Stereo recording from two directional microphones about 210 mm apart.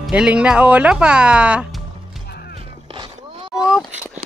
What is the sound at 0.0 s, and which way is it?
Speech, 5° right (ahead or behind).